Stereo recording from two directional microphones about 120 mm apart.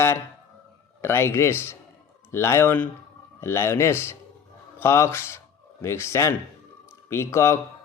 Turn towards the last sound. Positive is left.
turn(degrees=25)  # may be behind; listen again after turning